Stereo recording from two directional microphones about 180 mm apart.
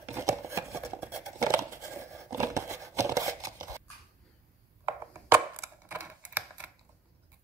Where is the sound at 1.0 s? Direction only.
15° right (ahead or behind).